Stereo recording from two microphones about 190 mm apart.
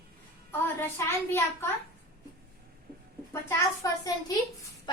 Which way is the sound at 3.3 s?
15° left (ahead or behind).